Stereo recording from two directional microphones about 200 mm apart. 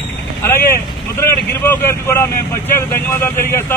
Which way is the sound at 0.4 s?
10° left (ahead or behind).